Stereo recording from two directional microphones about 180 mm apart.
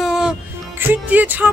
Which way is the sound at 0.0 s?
5° right (ahead or behind).